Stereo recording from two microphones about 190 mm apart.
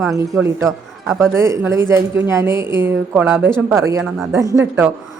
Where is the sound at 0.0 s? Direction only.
15° right (ahead or behind).